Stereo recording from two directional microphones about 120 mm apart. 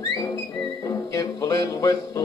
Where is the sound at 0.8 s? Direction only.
30° left (ahead or behind).